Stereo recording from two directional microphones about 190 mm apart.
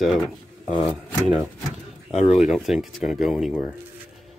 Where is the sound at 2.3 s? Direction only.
Centre (ahead or behind).